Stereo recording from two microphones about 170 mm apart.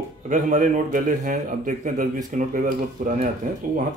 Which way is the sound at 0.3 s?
50° right (ahead or behind).